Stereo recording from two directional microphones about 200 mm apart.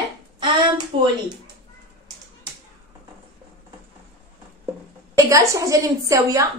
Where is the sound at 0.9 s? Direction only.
25° right (ahead or behind).